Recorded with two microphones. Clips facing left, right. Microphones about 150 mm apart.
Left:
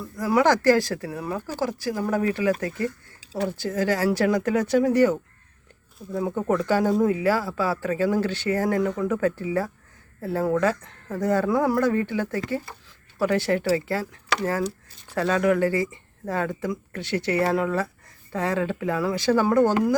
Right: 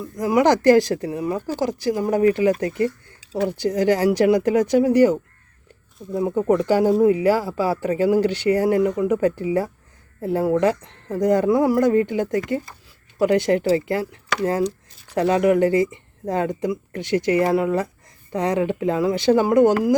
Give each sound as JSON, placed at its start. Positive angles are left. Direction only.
{"t": 0.0, "sound": "speech", "side_deg": -15}